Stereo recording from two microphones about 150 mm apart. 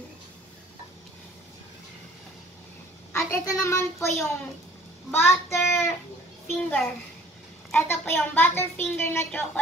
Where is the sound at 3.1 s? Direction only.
20° left (ahead or behind).